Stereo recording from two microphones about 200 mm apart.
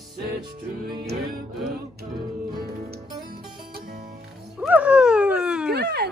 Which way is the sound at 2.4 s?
50° right (ahead or behind).